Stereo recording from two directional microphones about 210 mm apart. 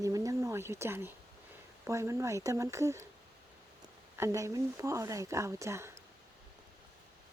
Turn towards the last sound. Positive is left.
turn(degrees=-15)  # may be behind; listen again after turning